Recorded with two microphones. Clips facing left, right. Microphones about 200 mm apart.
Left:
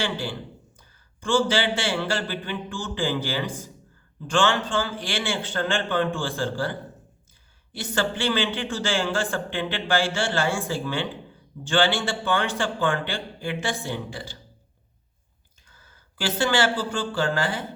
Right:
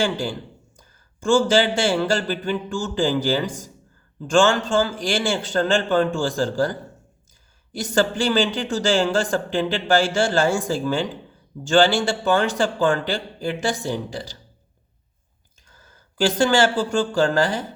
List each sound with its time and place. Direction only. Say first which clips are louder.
0.0 s a man's voice: right 5 dB; 45° right (ahead or behind)
7.9 s speech: right 5 dB; 45° right (ahead or behind)
15.7 s a sound: right 4 dB; 45° right (ahead or behind)
16.4 s speech: right 4 dB; 45° right (ahead or behind)